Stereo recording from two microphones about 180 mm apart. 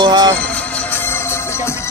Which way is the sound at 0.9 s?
15° left (ahead or behind).